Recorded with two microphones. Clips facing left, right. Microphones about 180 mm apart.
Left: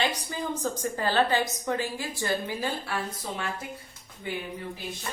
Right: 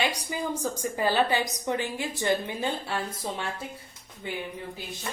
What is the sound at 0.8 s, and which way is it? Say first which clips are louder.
A woman's voice: right 1 dB; 10° right (ahead or behind).